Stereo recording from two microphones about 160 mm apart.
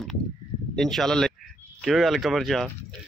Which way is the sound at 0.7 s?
5° left (ahead or behind).